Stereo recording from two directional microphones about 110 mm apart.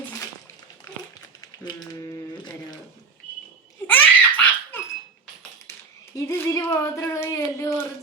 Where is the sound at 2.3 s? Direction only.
45° left (ahead or behind).